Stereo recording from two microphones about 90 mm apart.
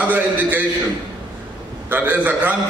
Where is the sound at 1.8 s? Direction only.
20° right (ahead or behind).